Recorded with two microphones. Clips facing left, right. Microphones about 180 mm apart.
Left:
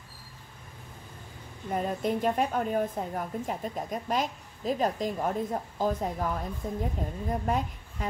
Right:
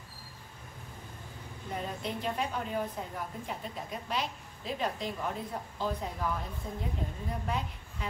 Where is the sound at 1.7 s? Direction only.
50° left (ahead or behind).